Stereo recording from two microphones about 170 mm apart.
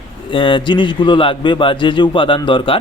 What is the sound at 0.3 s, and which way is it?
A man's voice, 30° left (ahead or behind).